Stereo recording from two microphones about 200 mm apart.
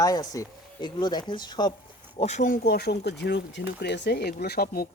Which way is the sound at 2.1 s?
35° left (ahead or behind).